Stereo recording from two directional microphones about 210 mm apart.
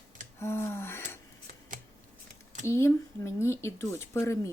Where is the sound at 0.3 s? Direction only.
10° left (ahead or behind).